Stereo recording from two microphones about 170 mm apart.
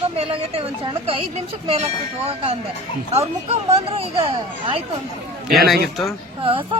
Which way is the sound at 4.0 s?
35° right (ahead or behind).